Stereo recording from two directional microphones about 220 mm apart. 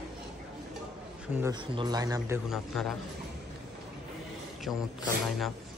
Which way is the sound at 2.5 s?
Centre (ahead or behind).